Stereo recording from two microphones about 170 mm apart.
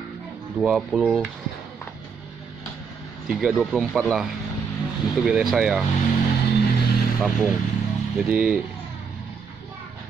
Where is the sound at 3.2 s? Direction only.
5° right (ahead or behind).